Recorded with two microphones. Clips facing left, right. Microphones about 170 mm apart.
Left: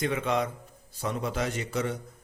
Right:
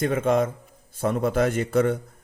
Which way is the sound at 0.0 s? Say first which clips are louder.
Right 6 dB; 45° right (ahead or behind).